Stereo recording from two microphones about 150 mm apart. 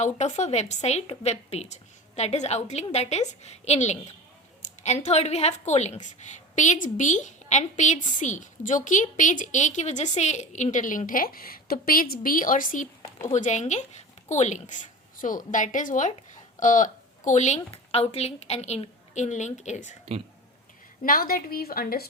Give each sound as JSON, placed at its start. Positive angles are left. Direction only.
{"t": 0.0, "sound": "a woman's voice", "side_deg": 50}
{"t": 13.0, "sound": "a sound", "side_deg": 20}
{"t": 13.3, "sound": "a woman's voice", "side_deg": 55}
{"t": 21.0, "sound": "a woman's voice", "side_deg": 75}